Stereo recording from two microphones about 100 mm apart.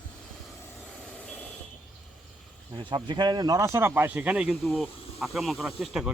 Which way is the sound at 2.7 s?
55° right (ahead or behind).